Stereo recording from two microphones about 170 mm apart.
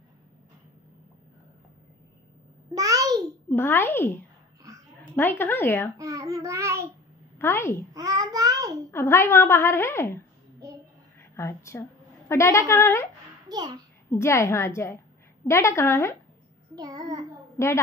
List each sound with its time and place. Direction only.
2.7 s a sound: 20° right (ahead or behind)
3.4 s a woman's voice: 10° left (ahead or behind)
5.9 s child singing: 20° right (ahead or behind)
7.3 s a woman's voice: 15° left (ahead or behind)
7.9 s child singing: 20° right (ahead or behind)
8.9 s a woman's voice: 15° left (ahead or behind)
10.6 s child singing: 20° right (ahead or behind)
11.3 s a woman's voice: 15° left (ahead or behind)
13.5 s a child's voice: 25° right (ahead or behind)
14.1 s a woman's voice: 15° left (ahead or behind)
16.7 s a child's voice: 20° right (ahead or behind)
17.6 s a woman's voice: 15° left (ahead or behind)